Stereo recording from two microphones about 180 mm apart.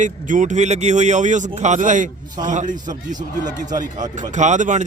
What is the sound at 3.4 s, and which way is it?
Speech, 20° right (ahead or behind).